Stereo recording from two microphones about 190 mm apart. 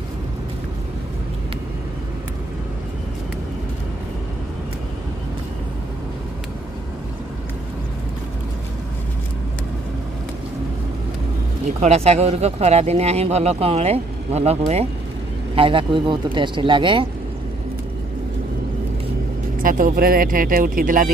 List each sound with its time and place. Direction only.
11.6 s speech: 35° right (ahead or behind)
19.6 s speech: 45° right (ahead or behind)